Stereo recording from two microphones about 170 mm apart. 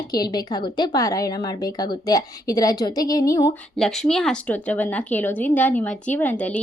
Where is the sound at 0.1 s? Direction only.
25° left (ahead or behind).